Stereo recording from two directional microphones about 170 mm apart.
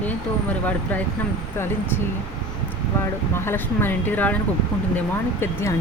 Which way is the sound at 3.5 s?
10° left (ahead or behind).